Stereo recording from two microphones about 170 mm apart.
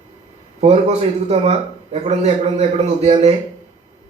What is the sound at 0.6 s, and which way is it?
A man's voice, 40° right (ahead or behind).